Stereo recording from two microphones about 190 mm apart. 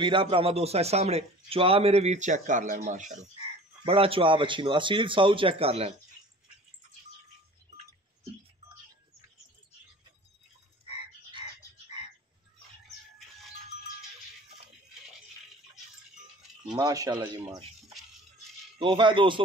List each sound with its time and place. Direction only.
0.0 s a man's voice: 25° right (ahead or behind)
3.8 s speech: 30° right (ahead or behind)
16.6 s speech: 20° right (ahead or behind)
18.8 s speech: 25° right (ahead or behind)